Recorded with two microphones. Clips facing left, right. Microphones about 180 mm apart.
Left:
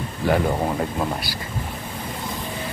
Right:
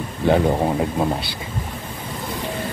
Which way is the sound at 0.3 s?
20° right (ahead or behind).